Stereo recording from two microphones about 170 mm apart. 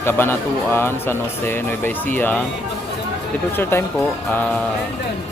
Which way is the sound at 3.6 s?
15° left (ahead or behind).